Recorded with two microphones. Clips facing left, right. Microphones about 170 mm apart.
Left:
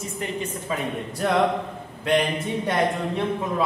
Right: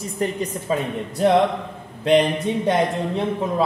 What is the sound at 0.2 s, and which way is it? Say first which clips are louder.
Speech: right 8 dB; 40° right (ahead or behind).